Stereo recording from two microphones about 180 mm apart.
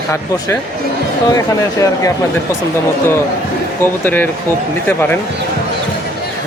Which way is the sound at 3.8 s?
10° left (ahead or behind).